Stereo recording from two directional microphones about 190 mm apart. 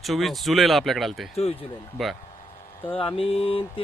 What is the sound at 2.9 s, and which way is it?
Mantra, 30° left (ahead or behind).